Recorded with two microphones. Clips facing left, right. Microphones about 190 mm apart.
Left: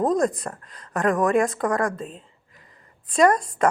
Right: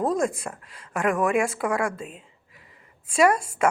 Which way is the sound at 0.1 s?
5° right (ahead or behind).